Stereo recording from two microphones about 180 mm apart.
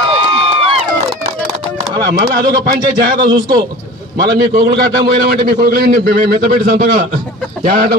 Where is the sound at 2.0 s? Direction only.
60° right (ahead or behind).